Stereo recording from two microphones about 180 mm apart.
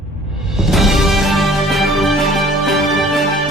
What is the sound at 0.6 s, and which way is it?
Music, centre (ahead or behind).